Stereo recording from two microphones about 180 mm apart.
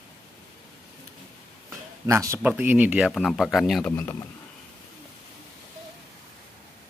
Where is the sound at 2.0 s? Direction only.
15° right (ahead or behind); by 3.9 s centre (ahead or behind).